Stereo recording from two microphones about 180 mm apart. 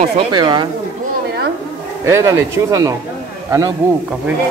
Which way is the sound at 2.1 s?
15° right (ahead or behind).